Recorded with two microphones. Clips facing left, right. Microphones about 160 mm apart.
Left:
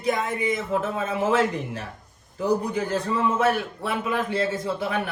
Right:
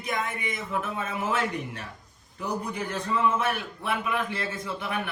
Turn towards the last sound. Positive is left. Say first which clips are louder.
# left 5 dB
turn(degrees=30)  # may be behind; listen again after turning